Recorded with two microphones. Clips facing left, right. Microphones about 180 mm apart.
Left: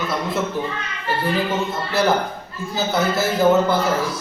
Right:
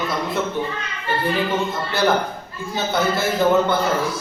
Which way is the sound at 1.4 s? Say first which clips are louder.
Even; centre (ahead or behind).